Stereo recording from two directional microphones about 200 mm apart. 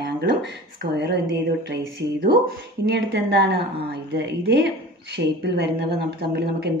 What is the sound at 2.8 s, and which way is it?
A woman's voice, 55° right (ahead or behind).